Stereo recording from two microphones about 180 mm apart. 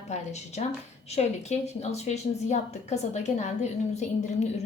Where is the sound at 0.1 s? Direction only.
40° left (ahead or behind).